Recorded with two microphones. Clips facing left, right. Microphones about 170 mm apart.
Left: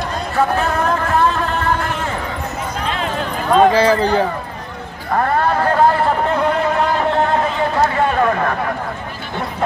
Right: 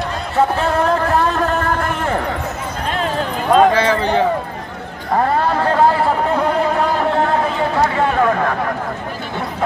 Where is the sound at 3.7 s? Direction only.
35° left (ahead or behind).